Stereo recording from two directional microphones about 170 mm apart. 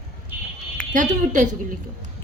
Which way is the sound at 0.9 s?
50° right (ahead or behind).